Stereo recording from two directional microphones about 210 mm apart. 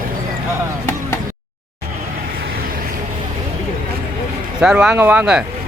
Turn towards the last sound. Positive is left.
turn(degrees=-5)  # may be behind; listen again after turning